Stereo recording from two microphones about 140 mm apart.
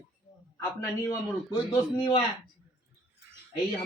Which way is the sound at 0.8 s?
25° left (ahead or behind).